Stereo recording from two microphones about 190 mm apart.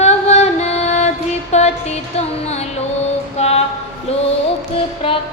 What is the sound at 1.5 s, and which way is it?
Music, 35° left (ahead or behind).